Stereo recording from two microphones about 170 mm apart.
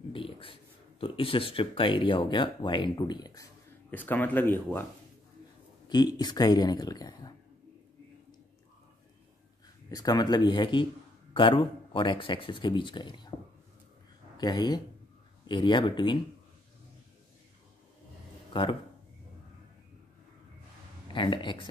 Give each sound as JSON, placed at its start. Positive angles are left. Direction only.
{"t": 0.1, "sound": "speech", "side_deg": 30}
{"t": 3.9, "sound": "speech", "side_deg": 10}
{"t": 5.9, "sound": "speech", "side_deg": 25}
{"t": 9.8, "sound": "speech", "side_deg": 20}
{"t": 14.3, "sound": "speech", "side_deg": 25}
{"t": 18.5, "sound": "speech", "side_deg": 30}
{"t": 21.1, "sound": "speech", "side_deg": 30}